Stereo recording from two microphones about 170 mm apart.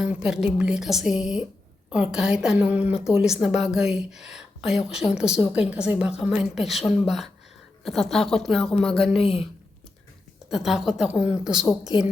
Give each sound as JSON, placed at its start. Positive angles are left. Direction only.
{"t": 0.0, "sound": "a woman's voice", "side_deg": -5}
{"t": 9.2, "sound": "speech", "side_deg": 35}
{"t": 10.5, "sound": "a woman's voice", "side_deg": 0}